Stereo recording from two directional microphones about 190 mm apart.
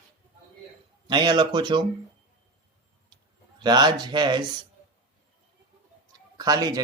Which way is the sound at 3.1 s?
25° right (ahead or behind).